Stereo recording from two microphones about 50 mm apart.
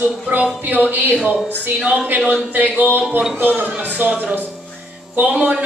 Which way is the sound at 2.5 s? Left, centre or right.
Right.